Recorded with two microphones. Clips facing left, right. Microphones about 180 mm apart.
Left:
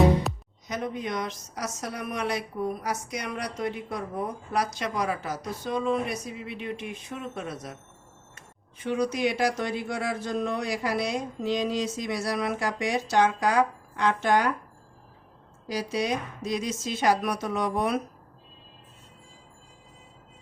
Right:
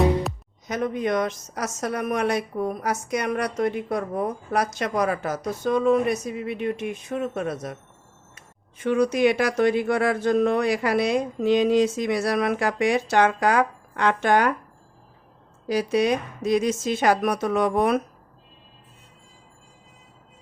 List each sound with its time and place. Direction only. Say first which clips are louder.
0.8 s a woman's voice: right 8 dB; 55° right (ahead or behind)
8.8 s speech: right 6 dB; 60° right (ahead or behind)
15.6 s speech: right 7 dB; 60° right (ahead or behind)